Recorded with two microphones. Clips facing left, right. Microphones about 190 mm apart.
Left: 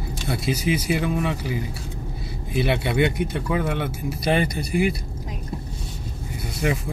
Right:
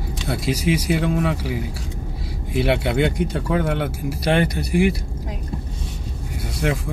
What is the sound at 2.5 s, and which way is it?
Speech, 80° right.